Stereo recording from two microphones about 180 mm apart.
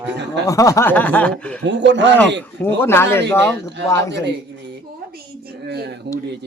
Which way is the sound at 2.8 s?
15° left (ahead or behind).